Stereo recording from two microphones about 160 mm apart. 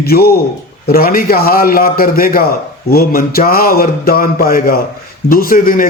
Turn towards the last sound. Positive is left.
turn(degrees=60)  # may be behind; listen again after turning